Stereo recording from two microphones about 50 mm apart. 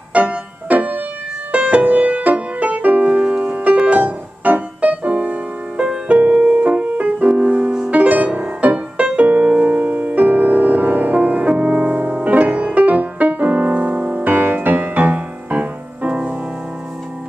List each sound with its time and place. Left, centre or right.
0.1 s music: right
14.2 s music: right